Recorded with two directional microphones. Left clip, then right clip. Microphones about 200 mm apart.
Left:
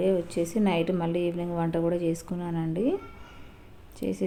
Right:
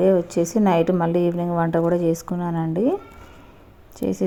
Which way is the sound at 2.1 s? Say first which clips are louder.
Right 7 dB; 10° right (ahead or behind).